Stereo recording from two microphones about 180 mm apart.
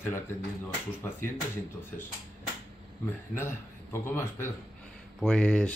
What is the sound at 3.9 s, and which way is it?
Speech, 15° left (ahead or behind).